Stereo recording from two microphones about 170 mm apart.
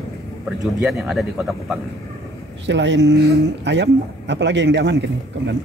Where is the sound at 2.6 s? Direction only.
90° right.